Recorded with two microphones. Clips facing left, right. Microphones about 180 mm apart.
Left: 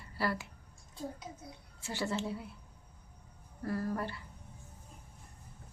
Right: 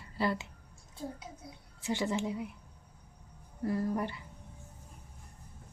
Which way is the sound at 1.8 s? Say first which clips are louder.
Right 3 dB; 15° right (ahead or behind).